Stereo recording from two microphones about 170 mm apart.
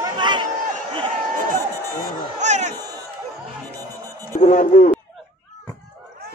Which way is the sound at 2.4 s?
45° right (ahead or behind).